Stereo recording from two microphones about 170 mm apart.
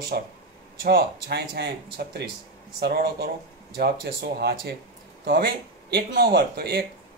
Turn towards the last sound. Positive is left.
turn(degrees=-75)  # may be behind; listen again after turning